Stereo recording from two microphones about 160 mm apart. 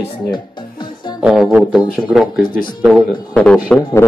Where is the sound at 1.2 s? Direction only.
5° right (ahead or behind).